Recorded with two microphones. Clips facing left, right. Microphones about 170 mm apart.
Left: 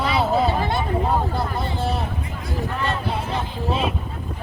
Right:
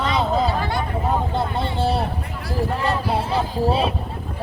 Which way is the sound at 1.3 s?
25° right (ahead or behind).